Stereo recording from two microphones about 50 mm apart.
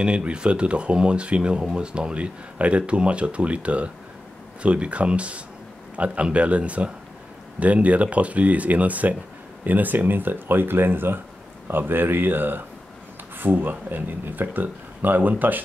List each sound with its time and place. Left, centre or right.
0.0 s speech: right